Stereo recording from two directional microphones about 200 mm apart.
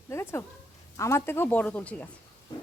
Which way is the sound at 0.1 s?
10° left (ahead or behind).